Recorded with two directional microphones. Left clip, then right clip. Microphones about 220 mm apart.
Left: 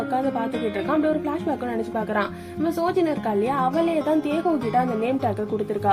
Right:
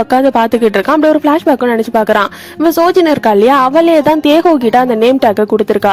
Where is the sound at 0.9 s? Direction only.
50° right (ahead or behind).